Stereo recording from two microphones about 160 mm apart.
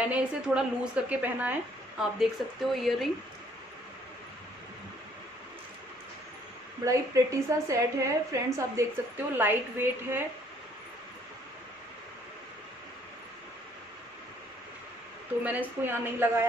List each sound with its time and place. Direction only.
0.0 s speech: 5° right (ahead or behind)
6.8 s a woman's voice: 20° right (ahead or behind)
15.4 s a woman's voice: 10° right (ahead or behind)